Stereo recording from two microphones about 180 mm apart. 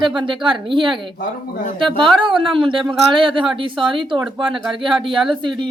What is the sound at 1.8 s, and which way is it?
A woman's voice, 25° right (ahead or behind).